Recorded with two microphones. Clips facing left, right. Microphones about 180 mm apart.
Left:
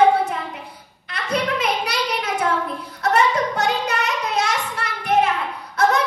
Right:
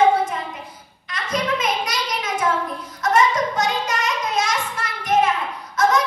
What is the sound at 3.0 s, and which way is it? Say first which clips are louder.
Child singing: even; 65° left (ahead or behind).